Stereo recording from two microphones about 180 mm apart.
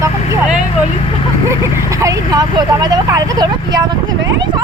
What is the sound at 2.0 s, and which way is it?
Speech, 20° right (ahead or behind).